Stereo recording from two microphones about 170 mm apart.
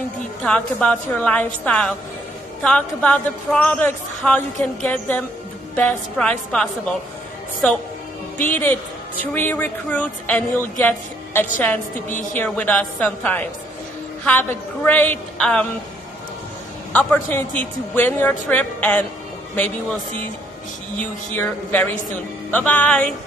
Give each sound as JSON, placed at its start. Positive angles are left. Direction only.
{"t": 0.4, "sound": "a man's voice", "side_deg": 5}
{"t": 8.5, "sound": "a man's voice", "side_deg": 10}
{"t": 16.9, "sound": "a man's voice", "side_deg": 10}
{"t": 21.4, "sound": "a man's voice", "side_deg": 10}